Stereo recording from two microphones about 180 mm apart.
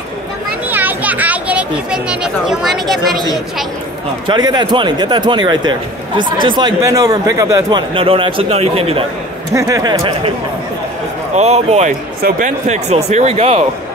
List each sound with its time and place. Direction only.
0.7 s speech: 10° right (ahead or behind)
4.3 s a man's voice: 25° right (ahead or behind)
7.9 s speech: 30° right (ahead or behind)
9.5 s a man's voice: 20° right (ahead or behind)
11.3 s speech: 35° right (ahead or behind)